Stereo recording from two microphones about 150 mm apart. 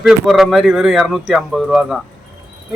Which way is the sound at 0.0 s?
Centre (ahead or behind).